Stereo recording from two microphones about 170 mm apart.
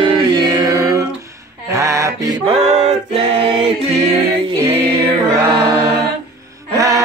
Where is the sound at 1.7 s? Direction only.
20° right (ahead or behind).